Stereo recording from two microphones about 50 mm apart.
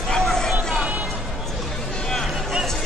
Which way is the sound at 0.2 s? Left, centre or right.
Centre.